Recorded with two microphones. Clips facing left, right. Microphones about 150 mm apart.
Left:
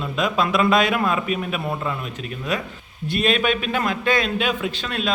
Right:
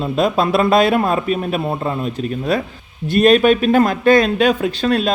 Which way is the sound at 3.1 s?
40° right (ahead or behind).